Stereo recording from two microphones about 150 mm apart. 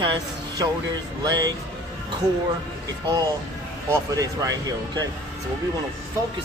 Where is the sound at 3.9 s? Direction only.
25° right (ahead or behind).